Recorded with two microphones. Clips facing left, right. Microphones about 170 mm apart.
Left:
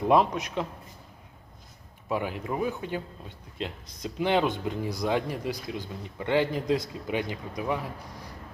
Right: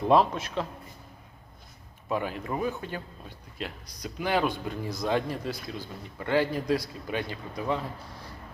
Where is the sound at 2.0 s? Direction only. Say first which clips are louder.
Left 1 dB; 15° left (ahead or behind).